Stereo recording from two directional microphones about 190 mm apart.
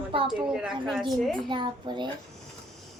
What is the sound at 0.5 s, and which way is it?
Speech, 5° right (ahead or behind).